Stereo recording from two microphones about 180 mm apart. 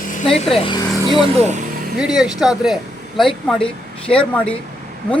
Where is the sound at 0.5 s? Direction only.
30° left (ahead or behind).